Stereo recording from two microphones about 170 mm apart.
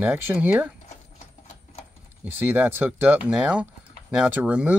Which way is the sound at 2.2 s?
10° right (ahead or behind).